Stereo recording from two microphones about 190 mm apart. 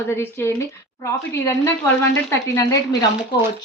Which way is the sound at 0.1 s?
10° left (ahead or behind).